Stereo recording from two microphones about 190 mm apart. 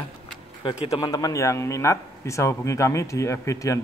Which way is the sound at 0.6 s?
25° left (ahead or behind).